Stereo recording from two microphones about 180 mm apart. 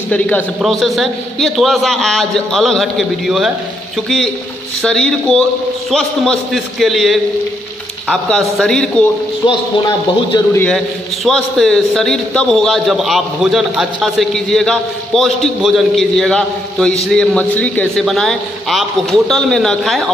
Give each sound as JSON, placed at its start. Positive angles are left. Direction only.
{"t": 0.1, "sound": "a man's voice", "side_deg": 10}
{"t": 4.8, "sound": "a man's voice", "side_deg": 5}
{"t": 9.5, "sound": "speech", "side_deg": 25}
{"t": 11.2, "sound": "a man's voice", "side_deg": 0}